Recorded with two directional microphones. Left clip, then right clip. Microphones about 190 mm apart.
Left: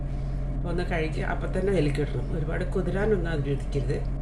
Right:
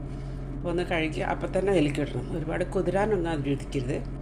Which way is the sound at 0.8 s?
35° right (ahead or behind).